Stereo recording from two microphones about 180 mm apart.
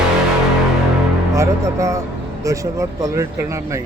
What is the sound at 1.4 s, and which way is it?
Speech, 15° right (ahead or behind).